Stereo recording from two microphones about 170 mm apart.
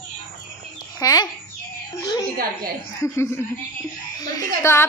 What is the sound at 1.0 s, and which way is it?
Speech, 20° left (ahead or behind).